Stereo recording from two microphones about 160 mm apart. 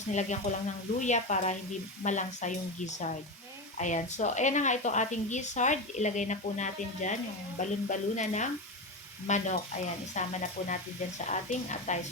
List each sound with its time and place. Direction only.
0.1 s a woman's voice: 50° left (ahead or behind)